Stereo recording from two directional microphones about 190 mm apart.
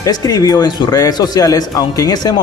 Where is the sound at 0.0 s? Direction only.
20° left (ahead or behind).